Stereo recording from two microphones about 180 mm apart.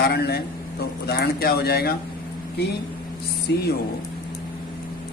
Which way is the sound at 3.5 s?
70° left (ahead or behind).